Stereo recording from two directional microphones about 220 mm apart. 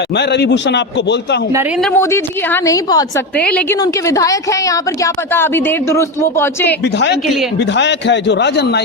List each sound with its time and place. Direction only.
0.2 s a man's voice: 50° left (ahead or behind)
1.8 s speech: 10° left (ahead or behind)
3.3 s a woman's voice: 5° left (ahead or behind)
6.8 s a man's voice: 50° left (ahead or behind)